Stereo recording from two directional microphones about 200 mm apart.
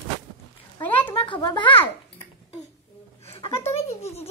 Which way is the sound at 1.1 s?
25° left (ahead or behind).